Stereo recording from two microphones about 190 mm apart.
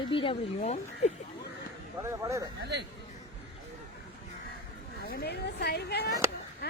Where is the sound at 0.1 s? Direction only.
25° left (ahead or behind).